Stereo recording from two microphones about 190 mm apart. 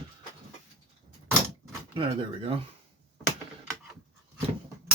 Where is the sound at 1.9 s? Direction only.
30° right (ahead or behind).